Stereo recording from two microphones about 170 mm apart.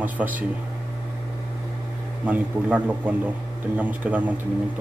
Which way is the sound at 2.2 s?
10° right (ahead or behind).